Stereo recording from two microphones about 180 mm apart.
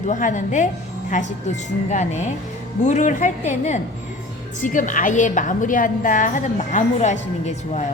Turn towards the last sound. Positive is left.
turn(degrees=40)  # may be behind; listen again after turning